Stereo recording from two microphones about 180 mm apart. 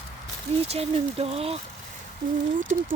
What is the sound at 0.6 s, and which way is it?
Speech, 35° right (ahead or behind).